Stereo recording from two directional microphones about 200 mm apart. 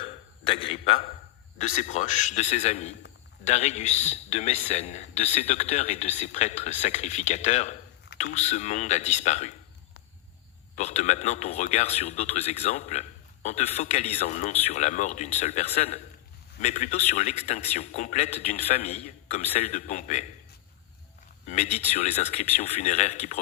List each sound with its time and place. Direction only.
0.0 s a sound: 25° left (ahead or behind)
1.5 s speech: 35° left (ahead or behind)
10.8 s speech: 35° left (ahead or behind)
21.4 s speech: 35° left (ahead or behind)